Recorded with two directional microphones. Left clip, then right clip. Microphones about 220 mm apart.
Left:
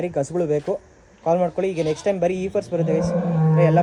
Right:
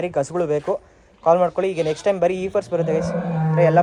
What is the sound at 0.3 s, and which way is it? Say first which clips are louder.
A man's voice: right 1 dB; centre (ahead or behind).